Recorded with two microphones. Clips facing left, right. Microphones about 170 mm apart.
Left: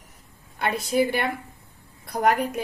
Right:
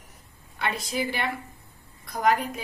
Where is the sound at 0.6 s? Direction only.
55° left (ahead or behind).